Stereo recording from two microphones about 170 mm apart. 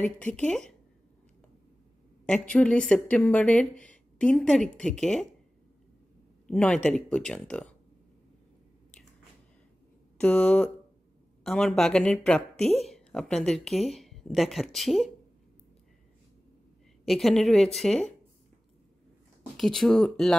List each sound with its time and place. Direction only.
0.0 s a woman's voice: 5° left (ahead or behind)
2.2 s speech: 5° left (ahead or behind)
6.4 s a woman's voice: 5° left (ahead or behind)
10.1 s a woman's voice: 5° left (ahead or behind)
17.0 s a woman's voice: centre (ahead or behind)
19.5 s a woman's voice: centre (ahead or behind)